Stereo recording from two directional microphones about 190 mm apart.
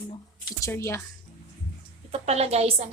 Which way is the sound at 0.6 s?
15° left (ahead or behind).